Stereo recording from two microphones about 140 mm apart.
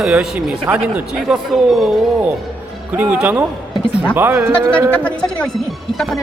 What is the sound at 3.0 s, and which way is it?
Speech, 10° right (ahead or behind).